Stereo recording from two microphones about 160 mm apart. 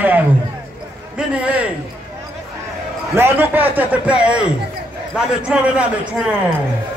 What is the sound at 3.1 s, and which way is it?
Speech, 15° right (ahead or behind).